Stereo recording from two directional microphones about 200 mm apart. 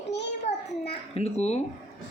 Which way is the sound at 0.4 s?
30° left (ahead or behind).